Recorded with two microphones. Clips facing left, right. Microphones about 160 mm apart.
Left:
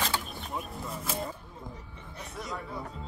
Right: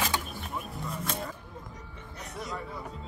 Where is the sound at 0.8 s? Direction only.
Centre (ahead or behind).